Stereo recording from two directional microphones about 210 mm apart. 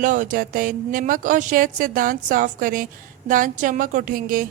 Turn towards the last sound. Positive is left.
turn(degrees=-40)  # may be behind; listen again after turning